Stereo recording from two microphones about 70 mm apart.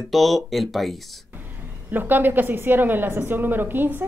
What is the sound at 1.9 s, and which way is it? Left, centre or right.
A woman's voice, right.